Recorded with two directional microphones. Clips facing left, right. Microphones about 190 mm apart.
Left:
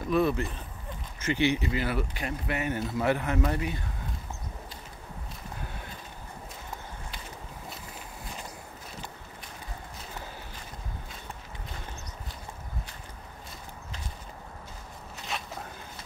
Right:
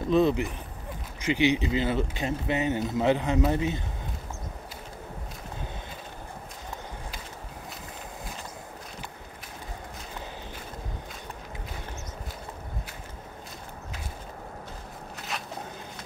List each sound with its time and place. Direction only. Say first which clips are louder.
0.1 s speech: right 3 dB; 20° right (ahead or behind)